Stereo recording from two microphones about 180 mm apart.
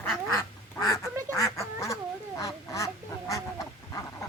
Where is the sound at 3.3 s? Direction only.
20° left (ahead or behind).